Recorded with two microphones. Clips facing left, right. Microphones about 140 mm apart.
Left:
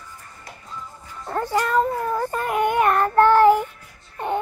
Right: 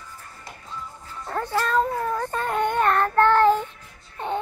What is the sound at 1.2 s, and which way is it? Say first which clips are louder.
Child singing: left 3 dB; 10° left (ahead or behind).